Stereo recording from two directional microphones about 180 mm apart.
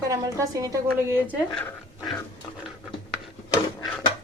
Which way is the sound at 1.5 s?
5° left (ahead or behind).